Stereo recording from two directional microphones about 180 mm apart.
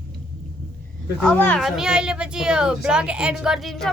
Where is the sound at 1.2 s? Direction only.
10° left (ahead or behind).